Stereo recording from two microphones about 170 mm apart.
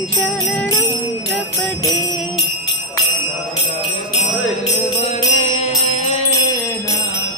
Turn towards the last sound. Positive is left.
turn(degrees=40)  # may be behind; listen again after turning